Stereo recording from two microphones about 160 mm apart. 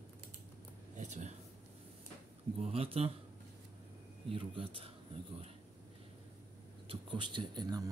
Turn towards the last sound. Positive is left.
turn(degrees=-25)  # may be behind; listen again after turning